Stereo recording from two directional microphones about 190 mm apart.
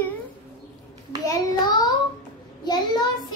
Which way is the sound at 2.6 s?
20° left (ahead or behind).